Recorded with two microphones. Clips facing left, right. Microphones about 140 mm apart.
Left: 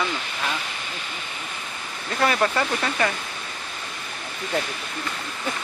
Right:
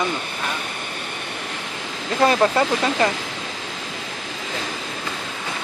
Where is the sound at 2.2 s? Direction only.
30° right (ahead or behind).